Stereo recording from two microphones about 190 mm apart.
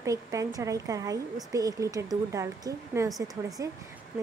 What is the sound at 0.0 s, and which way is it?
Speech, 15° right (ahead or behind).